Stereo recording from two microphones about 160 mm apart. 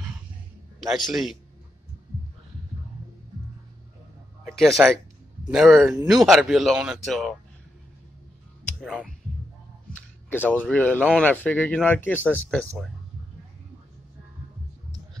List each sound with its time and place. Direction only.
0.7 s speech: centre (ahead or behind)
4.8 s speech: 10° right (ahead or behind)
8.8 s speech: 5° right (ahead or behind)
10.3 s speech: 10° left (ahead or behind)